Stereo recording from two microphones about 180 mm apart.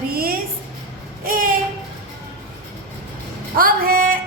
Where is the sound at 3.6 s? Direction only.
55° right (ahead or behind).